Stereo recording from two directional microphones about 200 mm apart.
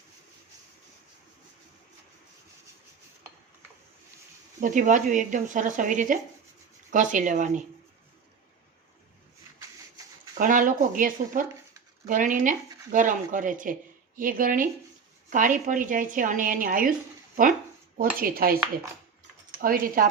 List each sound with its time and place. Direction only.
4.6 s speech: 40° right (ahead or behind)
10.3 s speech: 45° right (ahead or behind)
17.9 s speech: 45° right (ahead or behind)
19.6 s speech: 45° right (ahead or behind)